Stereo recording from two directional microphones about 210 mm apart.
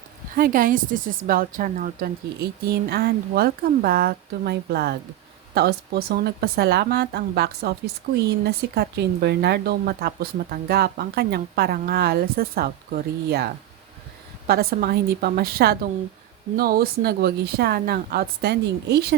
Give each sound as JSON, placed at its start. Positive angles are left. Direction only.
{"t": 0.3, "sound": "speech", "side_deg": -40}